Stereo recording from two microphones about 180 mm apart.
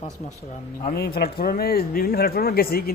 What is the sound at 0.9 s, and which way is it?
Speech, 60° left (ahead or behind).